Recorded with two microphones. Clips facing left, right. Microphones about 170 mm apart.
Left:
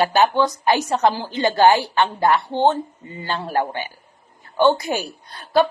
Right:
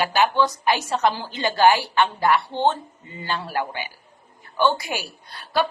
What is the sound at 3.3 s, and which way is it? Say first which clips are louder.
Speech: left 4 dB; 40° left (ahead or behind).